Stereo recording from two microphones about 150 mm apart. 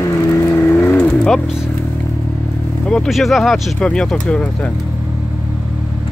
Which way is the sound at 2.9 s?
Centre (ahead or behind).